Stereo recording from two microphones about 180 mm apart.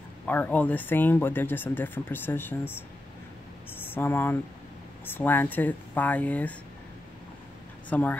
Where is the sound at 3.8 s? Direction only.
10° left (ahead or behind).